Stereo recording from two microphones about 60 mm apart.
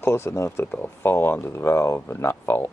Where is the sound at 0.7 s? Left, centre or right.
Left.